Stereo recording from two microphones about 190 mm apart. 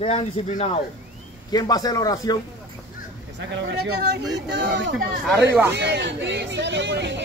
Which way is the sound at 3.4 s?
60° right (ahead or behind).